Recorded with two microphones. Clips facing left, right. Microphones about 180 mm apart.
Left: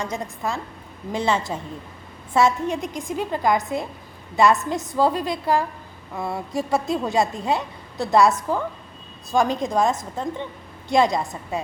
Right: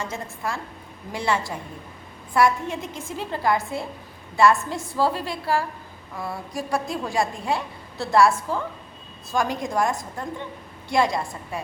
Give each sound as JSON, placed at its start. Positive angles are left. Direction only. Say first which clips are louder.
{"t": 0.0, "sound": "a woman's voice", "louder": "left 3 dB", "side_deg": 20}